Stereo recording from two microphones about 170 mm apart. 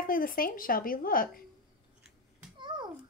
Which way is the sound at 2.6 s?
25° right (ahead or behind).